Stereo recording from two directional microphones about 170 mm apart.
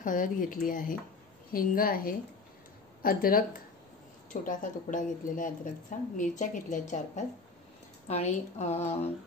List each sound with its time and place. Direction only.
0.0 s a woman's voice: 50° left (ahead or behind)